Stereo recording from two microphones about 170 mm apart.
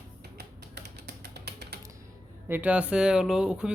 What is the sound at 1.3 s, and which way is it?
Typing, 75° right (ahead or behind).